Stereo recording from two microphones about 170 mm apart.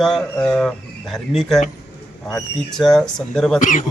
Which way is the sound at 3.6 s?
50° left (ahead or behind).